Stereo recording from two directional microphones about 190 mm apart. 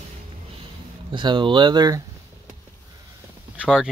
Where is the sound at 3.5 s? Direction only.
5° right (ahead or behind).